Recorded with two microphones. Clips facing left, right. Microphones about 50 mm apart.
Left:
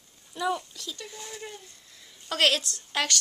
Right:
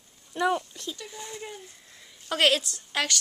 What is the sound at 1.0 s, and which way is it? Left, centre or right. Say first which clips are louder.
A woman's voice: right 1 dB; centre.